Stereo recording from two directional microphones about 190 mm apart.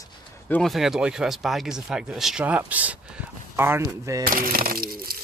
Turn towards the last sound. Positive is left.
turn(degrees=-50)  # may be behind; listen again after turning